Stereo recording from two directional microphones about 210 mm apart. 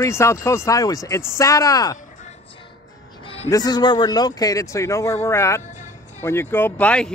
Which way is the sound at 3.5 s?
20° left (ahead or behind).